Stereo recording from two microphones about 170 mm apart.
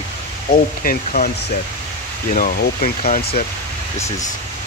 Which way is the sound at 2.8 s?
40° left (ahead or behind).